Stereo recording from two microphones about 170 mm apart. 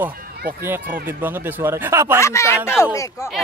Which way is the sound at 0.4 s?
60° right (ahead or behind).